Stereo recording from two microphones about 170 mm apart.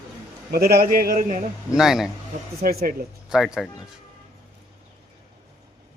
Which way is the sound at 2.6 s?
65° right (ahead or behind).